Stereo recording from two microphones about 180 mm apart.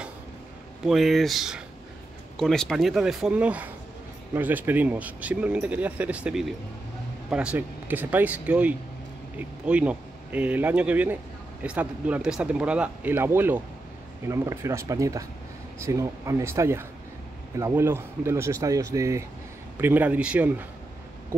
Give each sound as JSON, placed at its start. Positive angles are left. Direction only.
{"t": 0.8, "sound": "speech", "side_deg": 0}